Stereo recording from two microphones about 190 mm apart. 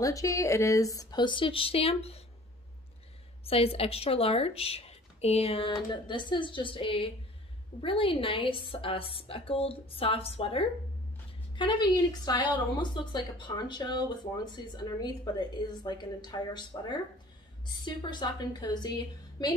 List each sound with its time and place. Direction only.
0.0 s speech: 15° left (ahead or behind); by 2.2 s 30° left (ahead or behind)
3.4 s a woman's voice: 30° left (ahead or behind)